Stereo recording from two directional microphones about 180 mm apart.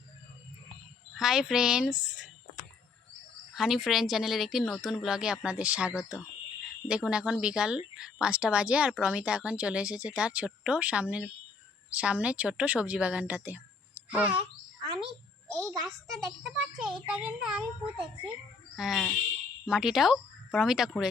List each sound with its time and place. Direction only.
1.1 s speech: centre (ahead or behind)
3.5 s a woman's voice: centre (ahead or behind)
15.0 s a sound: 5° left (ahead or behind)
15.9 s speech: centre (ahead or behind)